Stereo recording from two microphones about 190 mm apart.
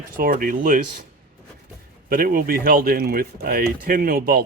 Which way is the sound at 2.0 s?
50° right (ahead or behind).